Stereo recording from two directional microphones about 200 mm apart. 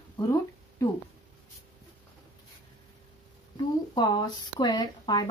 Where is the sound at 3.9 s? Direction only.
20° left (ahead or behind).